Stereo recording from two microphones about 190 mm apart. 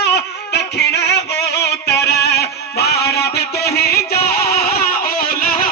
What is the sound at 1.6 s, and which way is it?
Music, 60° left (ahead or behind).